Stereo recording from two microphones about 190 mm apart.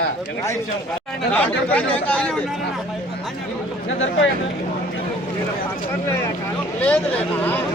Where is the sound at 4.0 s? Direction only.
80° left.